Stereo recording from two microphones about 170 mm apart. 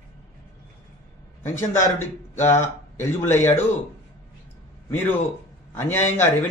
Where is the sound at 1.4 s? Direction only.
15° left (ahead or behind).